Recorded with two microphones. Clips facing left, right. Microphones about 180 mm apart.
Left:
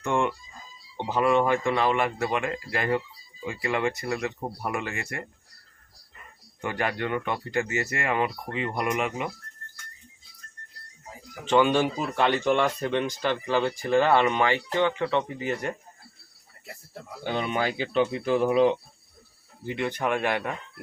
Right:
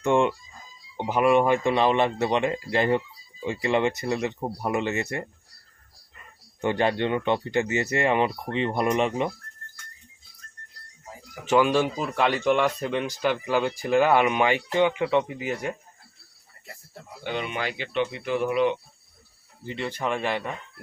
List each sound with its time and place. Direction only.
0.0 s fowl: 20° right (ahead or behind)
0.9 s speech: 15° right (ahead or behind)
6.6 s speech: 25° right (ahead or behind)
11.4 s speech: 5° right (ahead or behind)
17.3 s speech: 40° left (ahead or behind)
19.6 s speech: 10° left (ahead or behind)